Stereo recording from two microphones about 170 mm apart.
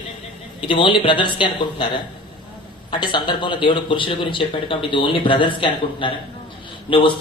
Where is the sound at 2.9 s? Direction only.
25° left (ahead or behind).